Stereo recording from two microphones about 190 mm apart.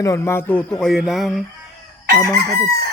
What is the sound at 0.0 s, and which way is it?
Speech, 15° left (ahead or behind).